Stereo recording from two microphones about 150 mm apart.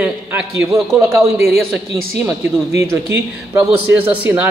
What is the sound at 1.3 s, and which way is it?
Speech, centre (ahead or behind).